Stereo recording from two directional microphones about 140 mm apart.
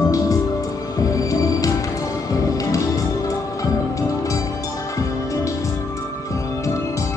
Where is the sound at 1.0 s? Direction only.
25° left (ahead or behind).